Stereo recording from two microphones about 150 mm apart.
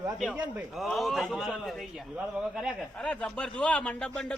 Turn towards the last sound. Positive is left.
turn(degrees=5)  # may be behind; listen again after turning